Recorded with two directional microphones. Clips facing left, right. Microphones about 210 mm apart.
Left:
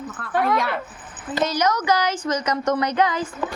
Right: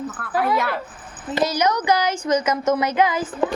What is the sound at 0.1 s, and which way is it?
A woman's voice, centre (ahead or behind).